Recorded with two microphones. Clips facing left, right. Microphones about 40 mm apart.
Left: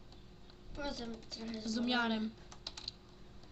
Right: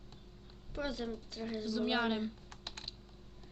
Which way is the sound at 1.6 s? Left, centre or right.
Centre.